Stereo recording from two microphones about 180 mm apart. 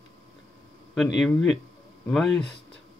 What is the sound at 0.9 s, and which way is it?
Speech, centre (ahead or behind).